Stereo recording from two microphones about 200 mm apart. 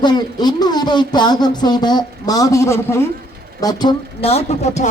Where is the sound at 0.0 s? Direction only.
20° left (ahead or behind).